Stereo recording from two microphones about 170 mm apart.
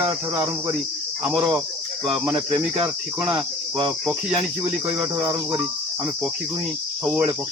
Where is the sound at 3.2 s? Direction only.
30° right (ahead or behind).